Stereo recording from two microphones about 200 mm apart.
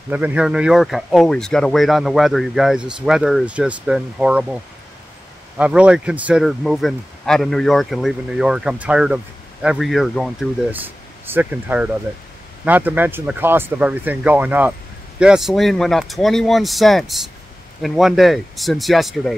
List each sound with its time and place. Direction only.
0.1 s speech: 5° right (ahead or behind)
5.6 s speech: 5° right (ahead or behind)